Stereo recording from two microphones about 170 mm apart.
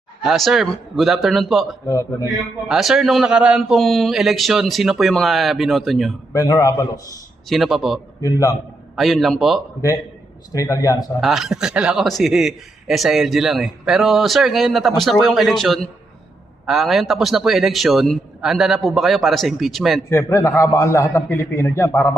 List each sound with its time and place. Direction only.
0.3 s a man's voice: centre (ahead or behind)
1.9 s a man's voice: 20° left (ahead or behind)
2.6 s a man's voice: centre (ahead or behind)
6.3 s a man's voice: 20° left (ahead or behind)
7.5 s a man's voice: centre (ahead or behind)
8.2 s a man's voice: 20° left (ahead or behind)
9.0 s a man's voice: centre (ahead or behind)
10.5 s a man's voice: 20° left (ahead or behind)
11.2 s a man's voice: centre (ahead or behind)
20.1 s a man's voice: 15° left (ahead or behind)